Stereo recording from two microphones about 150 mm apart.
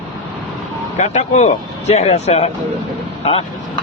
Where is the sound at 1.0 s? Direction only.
50° left (ahead or behind).